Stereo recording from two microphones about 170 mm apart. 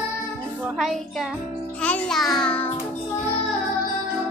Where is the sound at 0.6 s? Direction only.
Centre (ahead or behind).